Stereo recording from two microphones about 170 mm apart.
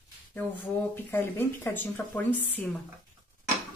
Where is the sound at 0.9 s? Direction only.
10° left (ahead or behind).